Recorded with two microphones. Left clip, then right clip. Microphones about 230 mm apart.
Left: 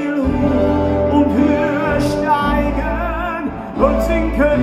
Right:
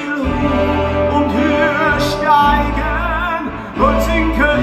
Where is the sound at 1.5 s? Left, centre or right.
Right.